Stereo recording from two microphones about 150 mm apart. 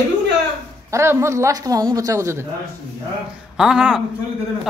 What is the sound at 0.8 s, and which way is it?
A woman's voice, 20° right (ahead or behind).